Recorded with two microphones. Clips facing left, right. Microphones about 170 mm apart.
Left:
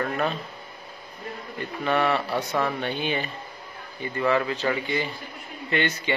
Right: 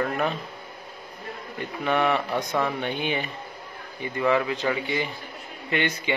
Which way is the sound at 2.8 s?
15° right (ahead or behind).